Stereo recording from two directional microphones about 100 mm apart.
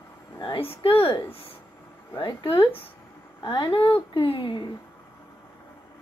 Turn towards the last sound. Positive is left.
turn(degrees=55)  # may be behind; listen again after turning